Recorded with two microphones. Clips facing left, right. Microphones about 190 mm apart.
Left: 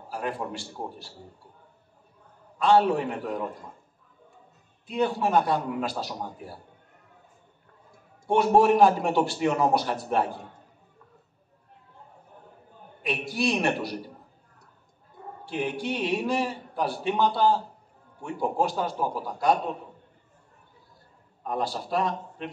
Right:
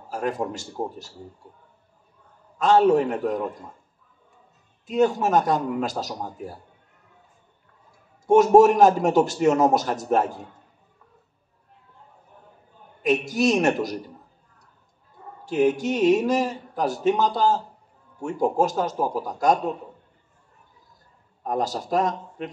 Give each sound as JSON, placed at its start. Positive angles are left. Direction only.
{"t": 0.1, "sound": "a man's voice", "side_deg": -45}
{"t": 2.6, "sound": "a man's voice", "side_deg": -45}
{"t": 4.8, "sound": "a man's voice", "side_deg": -45}
{"t": 8.3, "sound": "a man's voice", "side_deg": -45}
{"t": 13.0, "sound": "a man's voice", "side_deg": -45}
{"t": 15.4, "sound": "a man's voice", "side_deg": -45}
{"t": 21.5, "sound": "a man's voice", "side_deg": -45}